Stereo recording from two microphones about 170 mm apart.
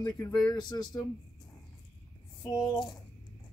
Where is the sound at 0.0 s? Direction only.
25° left (ahead or behind).